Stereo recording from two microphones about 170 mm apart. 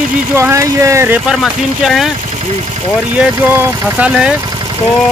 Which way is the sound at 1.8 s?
Centre (ahead or behind).